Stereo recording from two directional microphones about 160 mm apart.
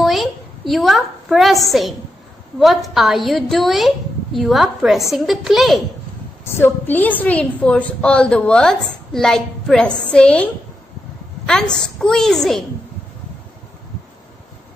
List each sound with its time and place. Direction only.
0.0 s a woman's voice: centre (ahead or behind)
6.4 s a woman's voice: 15° left (ahead or behind)